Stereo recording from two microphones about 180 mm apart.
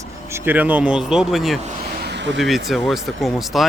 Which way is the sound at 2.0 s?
75° right (ahead or behind).